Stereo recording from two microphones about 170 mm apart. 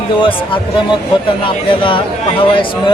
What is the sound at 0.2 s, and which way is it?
Speech, 30° left (ahead or behind).